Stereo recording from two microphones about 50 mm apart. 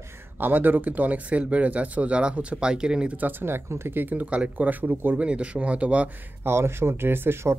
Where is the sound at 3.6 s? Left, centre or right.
Right.